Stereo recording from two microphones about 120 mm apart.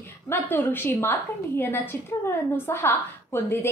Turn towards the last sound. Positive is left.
turn(degrees=20)  # may be behind; listen again after turning